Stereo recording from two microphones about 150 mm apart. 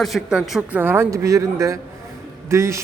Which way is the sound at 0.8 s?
15° right (ahead or behind).